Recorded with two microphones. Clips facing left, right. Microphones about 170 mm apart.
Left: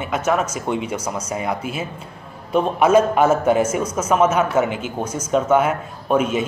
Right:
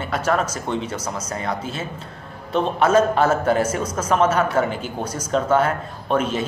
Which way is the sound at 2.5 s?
10° left (ahead or behind).